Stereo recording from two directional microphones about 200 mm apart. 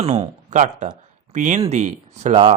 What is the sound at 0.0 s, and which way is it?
A man's voice, 30° right (ahead or behind).